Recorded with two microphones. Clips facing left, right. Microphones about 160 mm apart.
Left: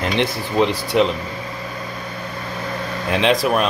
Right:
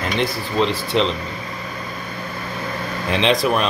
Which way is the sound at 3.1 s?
5° left (ahead or behind).